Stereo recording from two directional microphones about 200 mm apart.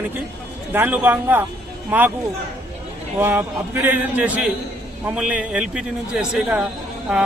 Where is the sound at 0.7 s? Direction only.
10° right (ahead or behind).